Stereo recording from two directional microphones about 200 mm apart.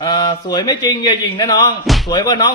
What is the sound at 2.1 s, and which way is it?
Speech, 20° left (ahead or behind).